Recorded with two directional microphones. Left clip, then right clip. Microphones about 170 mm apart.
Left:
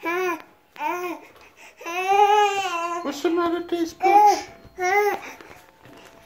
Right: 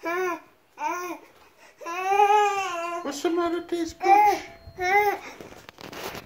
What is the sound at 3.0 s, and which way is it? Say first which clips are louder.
Speech: left 1 dB; centre (ahead or behind).